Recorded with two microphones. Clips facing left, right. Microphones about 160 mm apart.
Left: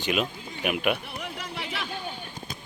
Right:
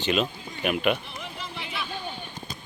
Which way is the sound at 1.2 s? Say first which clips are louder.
Left 2 dB; 75° left (ahead or behind).